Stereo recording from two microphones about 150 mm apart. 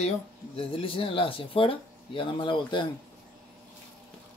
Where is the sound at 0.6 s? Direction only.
40° left (ahead or behind).